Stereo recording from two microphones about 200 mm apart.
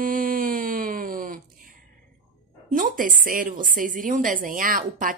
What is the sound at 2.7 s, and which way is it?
A woman's voice, 40° right (ahead or behind).